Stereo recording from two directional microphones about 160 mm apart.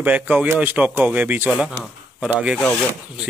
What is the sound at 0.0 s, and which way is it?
Speech, 10° right (ahead or behind).